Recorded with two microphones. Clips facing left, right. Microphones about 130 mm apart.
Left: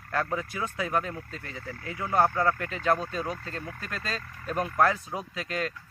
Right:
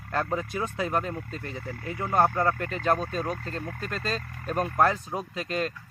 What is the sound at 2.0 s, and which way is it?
Speech, 20° right (ahead or behind).